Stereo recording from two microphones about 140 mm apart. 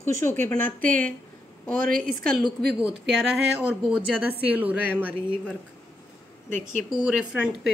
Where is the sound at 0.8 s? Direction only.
75° right (ahead or behind).